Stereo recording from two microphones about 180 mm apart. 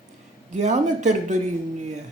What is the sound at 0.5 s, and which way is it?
Speech, 40° right (ahead or behind).